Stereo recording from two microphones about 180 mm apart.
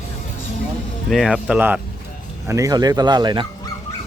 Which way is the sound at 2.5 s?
20° right (ahead or behind).